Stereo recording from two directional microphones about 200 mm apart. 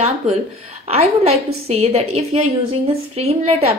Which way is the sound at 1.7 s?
30° right (ahead or behind).